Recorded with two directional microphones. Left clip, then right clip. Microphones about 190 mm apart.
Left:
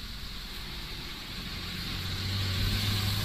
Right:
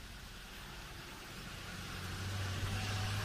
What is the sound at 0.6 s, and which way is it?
Vehicle, 35° left (ahead or behind).